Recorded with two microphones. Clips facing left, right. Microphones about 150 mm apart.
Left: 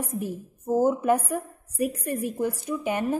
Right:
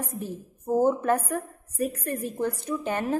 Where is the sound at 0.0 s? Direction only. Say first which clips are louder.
Left 3 dB; 10° left (ahead or behind).